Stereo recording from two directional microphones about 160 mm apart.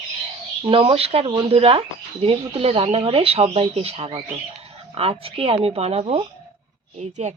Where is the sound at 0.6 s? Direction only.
35° right (ahead or behind).